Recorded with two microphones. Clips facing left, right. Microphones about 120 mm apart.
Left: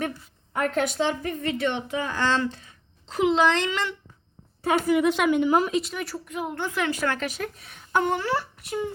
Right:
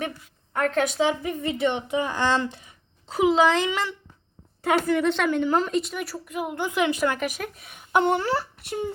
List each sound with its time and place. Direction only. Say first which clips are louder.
0.5 s a woman's voice: right 1 dB; 5° left (ahead or behind)
1.2 s speech: right 2 dB; 10° right (ahead or behind)
4.9 s a woman's voice: left 1 dB; 10° left (ahead or behind); by 8.0 s 10° right (ahead or behind)
8.0 s speech: right 2 dB; 30° right (ahead or behind)